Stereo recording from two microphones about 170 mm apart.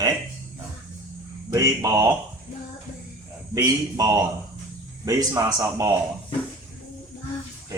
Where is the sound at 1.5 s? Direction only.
20° right (ahead or behind).